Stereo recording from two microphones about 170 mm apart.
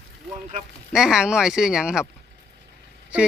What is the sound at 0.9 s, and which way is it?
Speech, 5° right (ahead or behind).